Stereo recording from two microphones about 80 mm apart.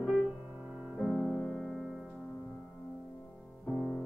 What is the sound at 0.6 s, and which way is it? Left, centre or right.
Music, centre.